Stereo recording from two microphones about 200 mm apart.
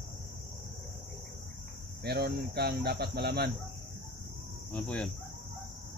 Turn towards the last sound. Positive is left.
turn(degrees=5)  # may be behind; listen again after turning